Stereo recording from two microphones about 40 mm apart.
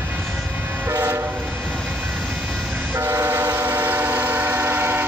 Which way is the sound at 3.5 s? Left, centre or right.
Right.